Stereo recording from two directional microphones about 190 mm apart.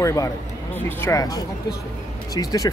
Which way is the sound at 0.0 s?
15° left (ahead or behind).